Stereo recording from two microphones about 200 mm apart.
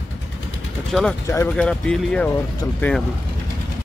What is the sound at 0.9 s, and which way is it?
Speech, 5° left (ahead or behind).